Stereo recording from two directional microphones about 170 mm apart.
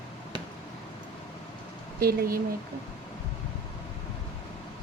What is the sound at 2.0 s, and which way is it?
Speech, 65° right (ahead or behind).